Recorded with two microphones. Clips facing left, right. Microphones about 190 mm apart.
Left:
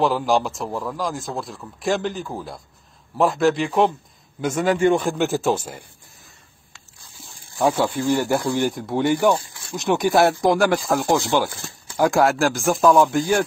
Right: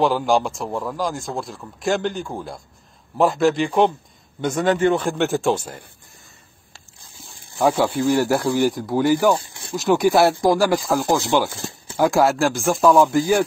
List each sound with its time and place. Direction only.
0.0 s speech: centre (ahead or behind)
7.5 s speech: 10° right (ahead or behind)
9.3 s snake: 25° right (ahead or behind)
9.8 s speech: centre (ahead or behind)
11.5 s a sound: 25° right (ahead or behind)
12.0 s speech: centre (ahead or behind)